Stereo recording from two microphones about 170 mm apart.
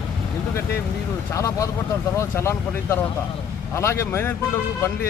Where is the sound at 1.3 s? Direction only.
20° left (ahead or behind).